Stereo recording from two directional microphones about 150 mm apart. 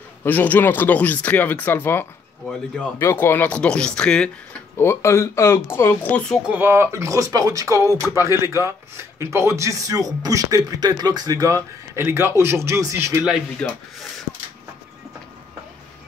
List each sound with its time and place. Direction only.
0.2 s speech: 10° left (ahead or behind)
4.7 s speech: 15° left (ahead or behind)
6.5 s speech: 15° right (ahead or behind)